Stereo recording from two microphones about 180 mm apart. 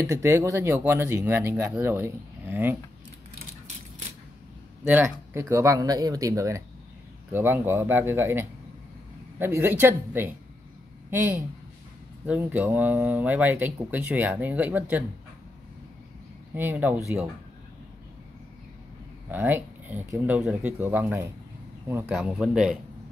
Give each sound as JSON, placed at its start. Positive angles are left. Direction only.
{"t": 0.1, "sound": "speech", "side_deg": -15}
{"t": 4.8, "sound": "speech", "side_deg": -10}
{"t": 16.5, "sound": "speech", "side_deg": -10}
{"t": 19.3, "sound": "speech", "side_deg": -10}